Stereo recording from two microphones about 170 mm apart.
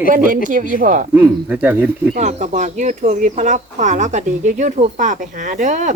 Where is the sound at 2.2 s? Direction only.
45° right (ahead or behind).